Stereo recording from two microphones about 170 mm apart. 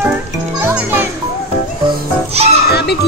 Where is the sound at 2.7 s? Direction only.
75° left (ahead or behind).